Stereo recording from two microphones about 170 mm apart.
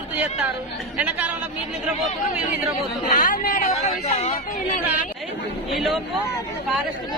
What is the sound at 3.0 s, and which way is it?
Speech, 50° left (ahead or behind).